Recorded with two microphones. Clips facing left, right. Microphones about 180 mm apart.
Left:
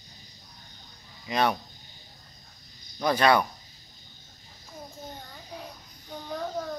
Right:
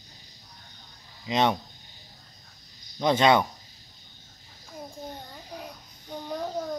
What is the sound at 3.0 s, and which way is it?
Speech, 20° right (ahead or behind).